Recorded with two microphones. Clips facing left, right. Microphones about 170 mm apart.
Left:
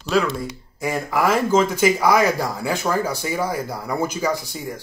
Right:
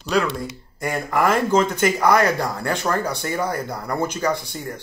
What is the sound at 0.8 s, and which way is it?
Speech, centre (ahead or behind).